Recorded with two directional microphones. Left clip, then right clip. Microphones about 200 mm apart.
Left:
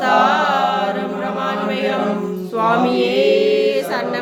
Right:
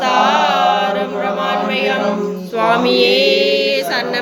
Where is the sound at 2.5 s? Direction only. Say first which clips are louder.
Right 2 dB; 10° left (ahead or behind).